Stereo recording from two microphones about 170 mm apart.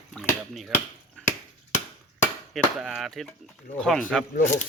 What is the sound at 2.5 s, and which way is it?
Speech, centre (ahead or behind).